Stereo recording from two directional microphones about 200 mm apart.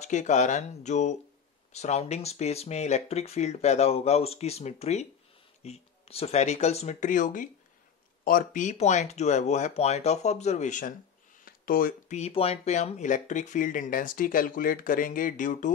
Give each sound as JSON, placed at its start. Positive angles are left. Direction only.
{"t": 0.0, "sound": "speech", "side_deg": 35}